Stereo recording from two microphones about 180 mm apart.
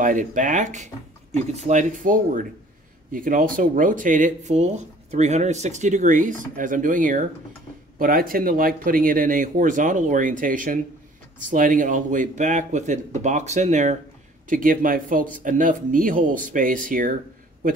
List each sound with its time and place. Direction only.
0.0 s speech: 45° right (ahead or behind)